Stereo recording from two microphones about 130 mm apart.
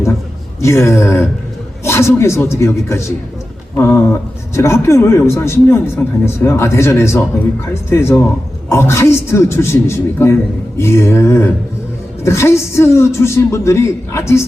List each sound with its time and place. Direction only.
0.6 s a man's voice: 20° left (ahead or behind)